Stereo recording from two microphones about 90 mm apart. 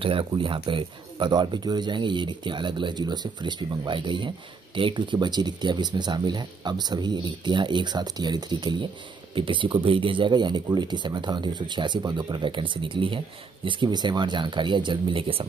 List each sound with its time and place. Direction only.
0.0 s speech: 75° right (ahead or behind); by 8.8 s 55° right (ahead or behind)
9.3 s speech: 70° right (ahead or behind)
13.7 s speech: 60° right (ahead or behind); by 15.4 s 85° right